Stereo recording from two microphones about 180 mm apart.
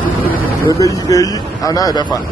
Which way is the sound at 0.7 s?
20° left (ahead or behind).